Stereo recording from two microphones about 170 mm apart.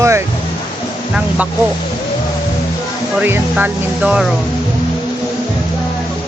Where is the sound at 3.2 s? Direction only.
10° right (ahead or behind).